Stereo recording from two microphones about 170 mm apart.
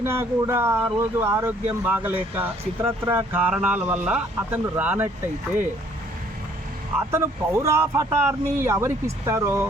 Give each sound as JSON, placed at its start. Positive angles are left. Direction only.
{"t": 0.0, "sound": "speech", "side_deg": -15}
{"t": 7.1, "sound": "speech", "side_deg": -15}